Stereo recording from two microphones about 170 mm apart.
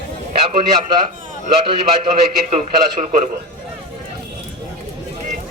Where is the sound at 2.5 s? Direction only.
35° right (ahead or behind).